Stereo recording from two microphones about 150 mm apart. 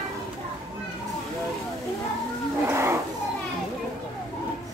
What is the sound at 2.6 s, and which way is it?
Roaring cats, 15° right (ahead or behind).